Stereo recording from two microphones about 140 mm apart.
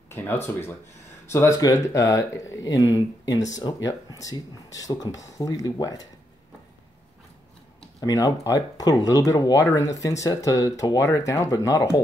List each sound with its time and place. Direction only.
0.1 s speech: 15° left (ahead or behind)
8.0 s speech: 25° left (ahead or behind)